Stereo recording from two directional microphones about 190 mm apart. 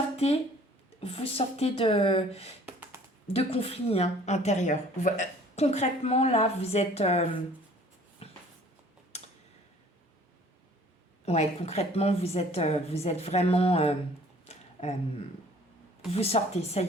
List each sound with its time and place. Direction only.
0.2 s a woman's voice: 30° left (ahead or behind)
2.6 s computer keyboard: 10° right (ahead or behind)
3.3 s a woman's voice: 30° left (ahead or behind)
8.2 s a sound: 30° left (ahead or behind)
11.3 s a woman's voice: 35° left (ahead or behind)
14.4 s a sound: 35° left (ahead or behind)
16.1 s a woman's voice: 30° left (ahead or behind)